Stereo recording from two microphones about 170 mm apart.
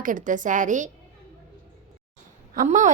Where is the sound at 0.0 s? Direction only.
50° right (ahead or behind).